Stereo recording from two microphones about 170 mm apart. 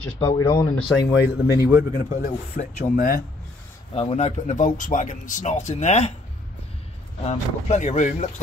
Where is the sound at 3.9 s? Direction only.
35° left (ahead or behind).